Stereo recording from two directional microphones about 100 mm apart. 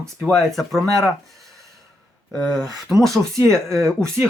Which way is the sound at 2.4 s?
Centre (ahead or behind).